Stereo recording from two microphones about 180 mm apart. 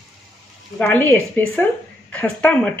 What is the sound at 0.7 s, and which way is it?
Speech, 10° left (ahead or behind).